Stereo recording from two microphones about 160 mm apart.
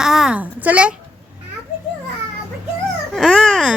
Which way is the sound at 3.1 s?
Centre (ahead or behind).